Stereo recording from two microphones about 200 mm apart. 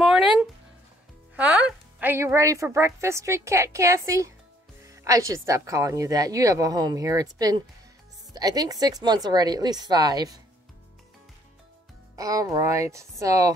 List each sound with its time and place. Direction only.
0.0 s a sound: centre (ahead or behind)
1.3 s a woman's voice: 5° right (ahead or behind)
12.2 s speech: 15° right (ahead or behind)